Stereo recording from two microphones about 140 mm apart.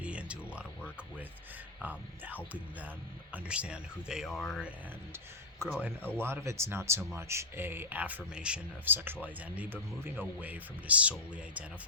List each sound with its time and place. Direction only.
0.0 s a sound: 10° right (ahead or behind)
1.8 s speech: 10° right (ahead or behind)
5.1 s speech: 15° right (ahead or behind)